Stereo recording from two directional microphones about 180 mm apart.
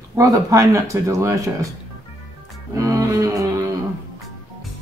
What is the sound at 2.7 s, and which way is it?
Speech, 15° right (ahead or behind).